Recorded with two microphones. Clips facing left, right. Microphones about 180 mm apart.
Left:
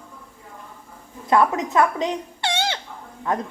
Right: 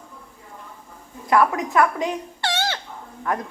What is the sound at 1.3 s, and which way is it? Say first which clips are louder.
A woman's voice: even; 20° left (ahead or behind).